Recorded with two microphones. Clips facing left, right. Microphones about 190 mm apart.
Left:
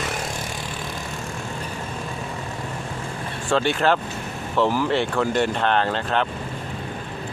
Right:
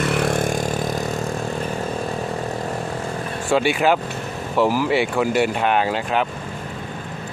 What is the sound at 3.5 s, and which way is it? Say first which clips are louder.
Speech: right 2 dB; 10° right (ahead or behind).